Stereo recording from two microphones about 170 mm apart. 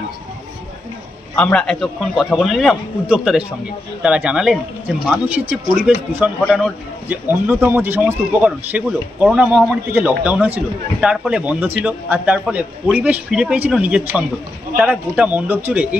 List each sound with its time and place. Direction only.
1.3 s a man's voice: 10° left (ahead or behind); by 16.0 s 10° right (ahead or behind)